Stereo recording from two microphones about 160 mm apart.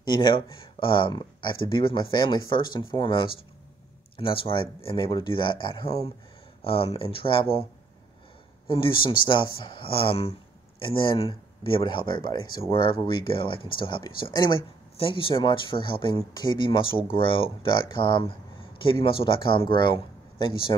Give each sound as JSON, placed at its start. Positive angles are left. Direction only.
{"t": 0.0, "sound": "speech", "side_deg": 25}
{"t": 8.6, "sound": "speech", "side_deg": 30}